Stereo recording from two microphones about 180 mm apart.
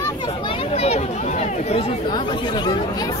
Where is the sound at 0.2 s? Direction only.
25° left (ahead or behind).